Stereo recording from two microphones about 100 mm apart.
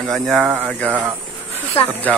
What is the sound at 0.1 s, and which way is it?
Speech, centre (ahead or behind).